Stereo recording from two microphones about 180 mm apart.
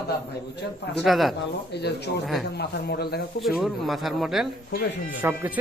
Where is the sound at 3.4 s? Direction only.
Centre (ahead or behind).